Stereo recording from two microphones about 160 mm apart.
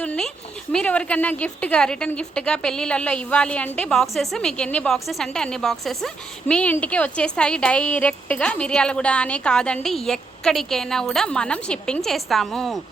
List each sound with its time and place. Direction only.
0.0 s a woman's voice: 10° left (ahead or behind)